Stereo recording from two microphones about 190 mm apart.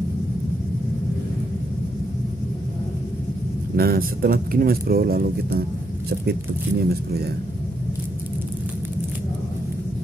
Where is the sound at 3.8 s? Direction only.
50° right (ahead or behind).